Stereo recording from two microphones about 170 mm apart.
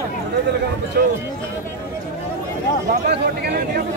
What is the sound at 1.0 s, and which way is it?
Speech, 70° right (ahead or behind).